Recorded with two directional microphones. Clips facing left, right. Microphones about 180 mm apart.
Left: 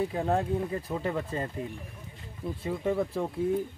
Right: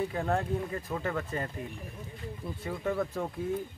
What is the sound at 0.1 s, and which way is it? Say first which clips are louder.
Speech: left 3 dB; 20° left (ahead or behind).